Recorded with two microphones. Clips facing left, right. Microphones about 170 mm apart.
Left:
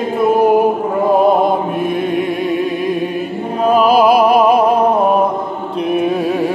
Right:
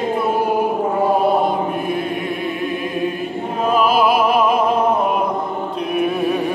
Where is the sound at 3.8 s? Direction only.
40° left (ahead or behind).